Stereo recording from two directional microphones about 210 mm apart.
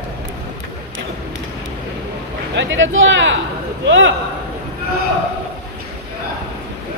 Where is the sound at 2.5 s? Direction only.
65° right (ahead or behind).